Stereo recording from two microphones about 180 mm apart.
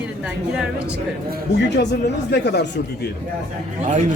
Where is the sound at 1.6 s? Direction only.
75° left (ahead or behind).